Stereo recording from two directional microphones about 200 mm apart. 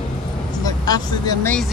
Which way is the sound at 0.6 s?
20° left (ahead or behind).